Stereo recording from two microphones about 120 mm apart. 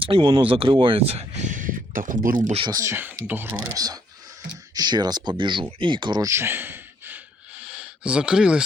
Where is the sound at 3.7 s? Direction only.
30° right (ahead or behind).